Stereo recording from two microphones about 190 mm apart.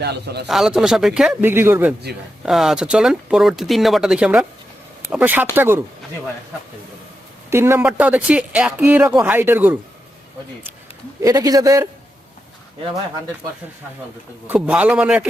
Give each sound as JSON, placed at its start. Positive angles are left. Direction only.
{"t": 0.0, "sound": "speech", "side_deg": -60}
{"t": 0.4, "sound": "speech", "side_deg": 0}
{"t": 7.5, "sound": "speech", "side_deg": -10}
{"t": 11.2, "sound": "speech", "side_deg": -20}
{"t": 14.4, "sound": "speech", "side_deg": -10}